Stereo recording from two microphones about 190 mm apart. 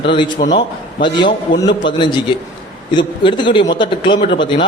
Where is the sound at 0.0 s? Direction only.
25° left (ahead or behind).